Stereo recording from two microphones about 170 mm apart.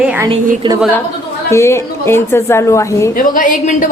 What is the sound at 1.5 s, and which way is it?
A woman's voice, 15° left (ahead or behind).